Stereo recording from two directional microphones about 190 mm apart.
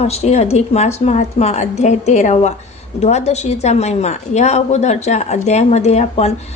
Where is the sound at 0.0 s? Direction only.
35° left (ahead or behind).